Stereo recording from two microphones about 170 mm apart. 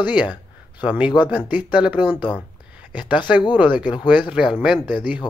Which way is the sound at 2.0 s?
30° left (ahead or behind).